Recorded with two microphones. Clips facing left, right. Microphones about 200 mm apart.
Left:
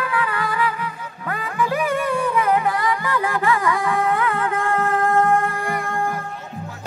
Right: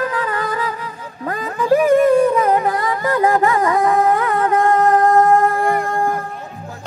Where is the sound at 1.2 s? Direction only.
40° right (ahead or behind).